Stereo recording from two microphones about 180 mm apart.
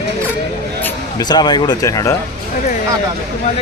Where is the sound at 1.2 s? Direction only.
25° left (ahead or behind).